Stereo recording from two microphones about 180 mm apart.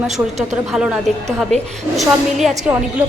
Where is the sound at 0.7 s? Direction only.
5° right (ahead or behind).